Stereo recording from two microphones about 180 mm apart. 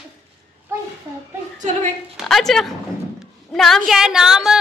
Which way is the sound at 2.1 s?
Centre (ahead or behind).